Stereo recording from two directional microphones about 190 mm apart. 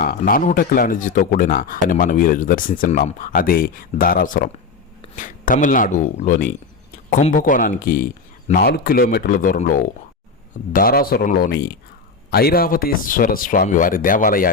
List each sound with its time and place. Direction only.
0.0 s speech: 50° left (ahead or behind)